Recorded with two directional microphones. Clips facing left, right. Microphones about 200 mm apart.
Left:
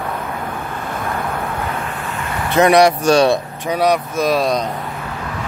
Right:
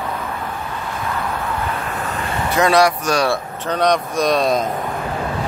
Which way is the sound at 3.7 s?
5° left (ahead or behind).